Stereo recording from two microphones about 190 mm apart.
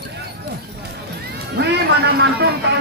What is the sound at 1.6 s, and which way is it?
Speech, 55° right (ahead or behind).